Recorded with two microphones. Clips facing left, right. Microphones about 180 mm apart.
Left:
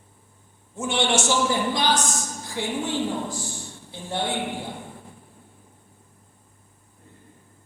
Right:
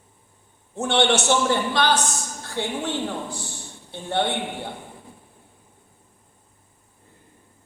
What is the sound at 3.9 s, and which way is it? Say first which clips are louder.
Speech: right 4 dB; 65° right (ahead or behind).